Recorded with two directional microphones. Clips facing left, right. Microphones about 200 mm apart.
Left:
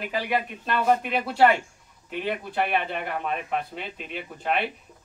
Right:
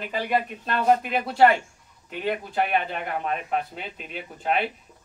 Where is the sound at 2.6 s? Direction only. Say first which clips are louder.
Even; centre (ahead or behind).